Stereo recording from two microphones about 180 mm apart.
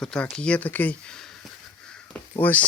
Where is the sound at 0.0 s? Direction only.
5° left (ahead or behind).